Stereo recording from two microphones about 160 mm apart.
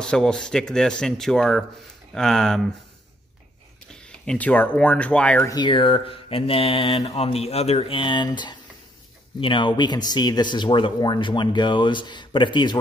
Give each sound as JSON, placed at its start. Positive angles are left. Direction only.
{"t": 0.0, "sound": "speech", "side_deg": 5}
{"t": 3.9, "sound": "speech", "side_deg": 5}
{"t": 5.5, "sound": "speech", "side_deg": 30}